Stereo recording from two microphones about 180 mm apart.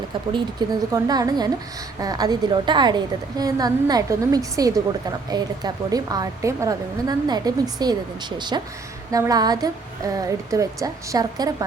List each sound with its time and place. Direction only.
0.3 s a woman's voice: 20° right (ahead or behind)